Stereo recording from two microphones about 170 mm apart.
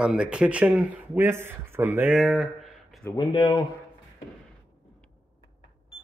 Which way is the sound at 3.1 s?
25° left (ahead or behind).